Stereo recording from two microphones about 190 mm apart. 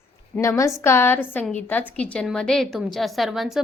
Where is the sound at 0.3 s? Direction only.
15° left (ahead or behind).